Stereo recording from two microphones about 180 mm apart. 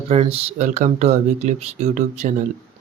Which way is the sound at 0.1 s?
35° right (ahead or behind).